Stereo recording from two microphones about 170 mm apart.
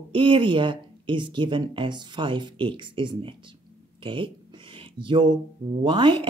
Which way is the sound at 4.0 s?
30° right (ahead or behind).